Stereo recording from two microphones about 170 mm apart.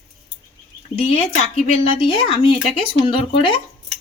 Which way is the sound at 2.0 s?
30° left (ahead or behind).